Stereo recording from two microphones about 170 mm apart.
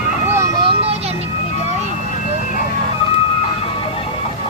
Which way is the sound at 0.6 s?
30° right (ahead or behind).